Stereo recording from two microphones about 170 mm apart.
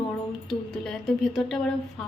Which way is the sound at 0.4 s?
Centre (ahead or behind).